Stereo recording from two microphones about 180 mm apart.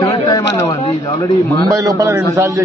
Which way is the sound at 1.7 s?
20° right (ahead or behind).